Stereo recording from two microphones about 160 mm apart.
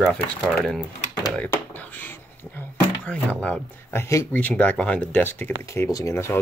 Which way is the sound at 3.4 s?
10° left (ahead or behind).